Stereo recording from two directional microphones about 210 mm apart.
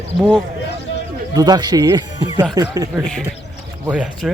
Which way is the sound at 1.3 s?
20° right (ahead or behind).